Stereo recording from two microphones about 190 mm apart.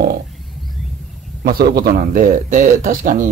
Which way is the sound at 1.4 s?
50° right (ahead or behind).